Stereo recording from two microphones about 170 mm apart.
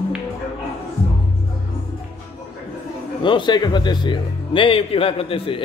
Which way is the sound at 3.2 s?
30° left (ahead or behind).